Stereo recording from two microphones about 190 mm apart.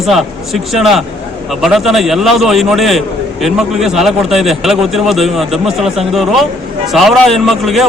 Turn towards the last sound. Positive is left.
turn(degrees=0)  # may be behind; listen again after turning